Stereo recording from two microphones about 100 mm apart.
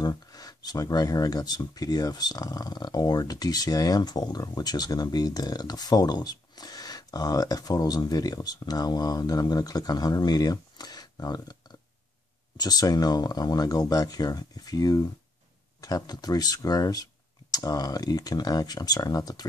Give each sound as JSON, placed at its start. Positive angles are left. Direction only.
{"t": 0.0, "sound": "speech", "side_deg": 40}
{"t": 12.5, "sound": "speech", "side_deg": 40}